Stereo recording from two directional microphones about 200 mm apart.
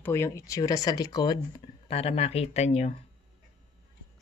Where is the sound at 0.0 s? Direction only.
15° left (ahead or behind); by 2.9 s 35° left (ahead or behind).